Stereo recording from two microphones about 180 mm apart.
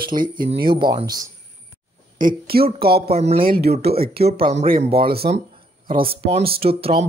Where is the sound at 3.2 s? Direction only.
35° right (ahead or behind).